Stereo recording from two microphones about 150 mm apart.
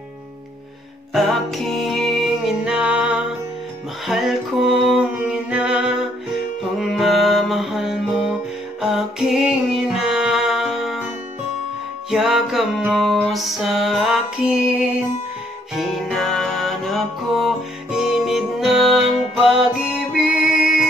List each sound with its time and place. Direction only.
1.1 s music: centre (ahead or behind)
12.1 s music: 5° right (ahead or behind)